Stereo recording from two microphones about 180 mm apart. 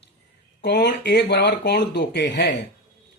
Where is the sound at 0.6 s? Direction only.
65° left (ahead or behind).